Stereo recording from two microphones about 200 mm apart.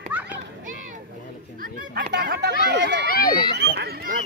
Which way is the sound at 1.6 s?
50° right (ahead or behind).